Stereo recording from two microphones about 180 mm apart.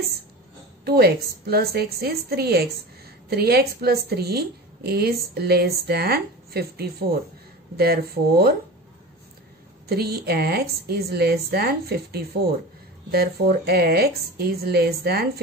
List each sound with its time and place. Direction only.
0.8 s a woman's voice: 60° right (ahead or behind)
9.8 s a woman's voice: 60° right (ahead or behind)